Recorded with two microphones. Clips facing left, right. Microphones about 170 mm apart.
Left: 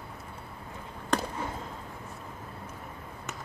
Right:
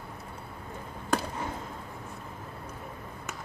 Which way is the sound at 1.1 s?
5° right (ahead or behind).